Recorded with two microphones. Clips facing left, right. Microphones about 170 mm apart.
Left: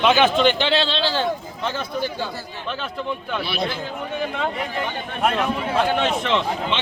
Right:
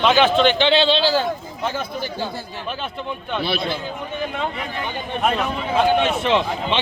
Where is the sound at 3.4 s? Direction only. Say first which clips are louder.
Right 4 dB; 25° right (ahead or behind).